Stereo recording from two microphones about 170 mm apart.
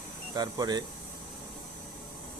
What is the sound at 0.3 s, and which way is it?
Speech, 25° right (ahead or behind).